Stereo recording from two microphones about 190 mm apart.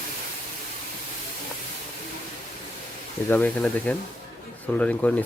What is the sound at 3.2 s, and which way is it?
Speech, 5° left (ahead or behind).